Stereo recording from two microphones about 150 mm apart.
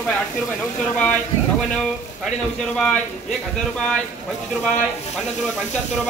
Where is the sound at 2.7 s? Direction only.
5° left (ahead or behind).